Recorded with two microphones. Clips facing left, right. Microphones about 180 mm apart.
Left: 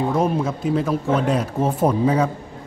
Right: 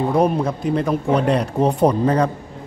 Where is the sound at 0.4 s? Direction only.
5° left (ahead or behind).